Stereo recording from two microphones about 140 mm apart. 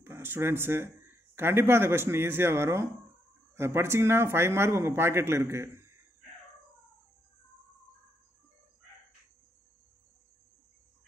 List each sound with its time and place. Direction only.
0.0 s speech: 15° right (ahead or behind)